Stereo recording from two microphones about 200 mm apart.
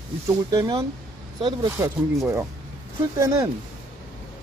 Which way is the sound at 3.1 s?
15° right (ahead or behind).